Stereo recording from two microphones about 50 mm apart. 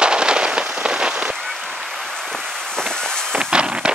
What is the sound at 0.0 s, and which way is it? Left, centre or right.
Rain, centre.